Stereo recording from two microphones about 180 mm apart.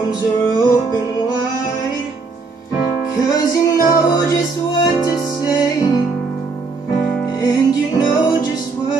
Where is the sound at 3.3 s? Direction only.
20° left (ahead or behind).